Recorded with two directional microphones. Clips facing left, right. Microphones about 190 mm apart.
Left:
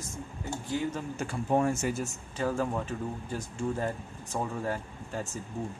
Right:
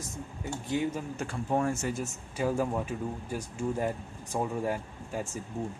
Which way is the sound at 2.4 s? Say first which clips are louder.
Right 1 dB; 15° right (ahead or behind).